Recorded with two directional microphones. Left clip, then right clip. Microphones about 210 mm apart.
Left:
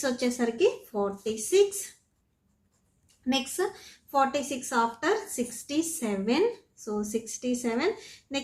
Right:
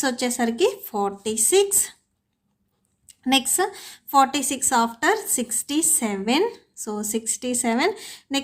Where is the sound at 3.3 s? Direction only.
45° right (ahead or behind).